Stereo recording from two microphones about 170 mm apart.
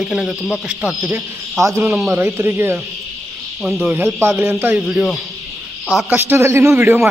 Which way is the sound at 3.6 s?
Centre (ahead or behind).